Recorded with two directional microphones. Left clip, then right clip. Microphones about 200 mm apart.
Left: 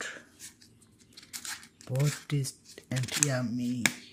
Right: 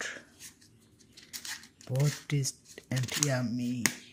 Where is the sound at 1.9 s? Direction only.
15° left (ahead or behind).